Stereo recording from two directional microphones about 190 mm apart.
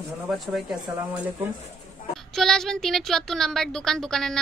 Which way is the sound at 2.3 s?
Centre (ahead or behind).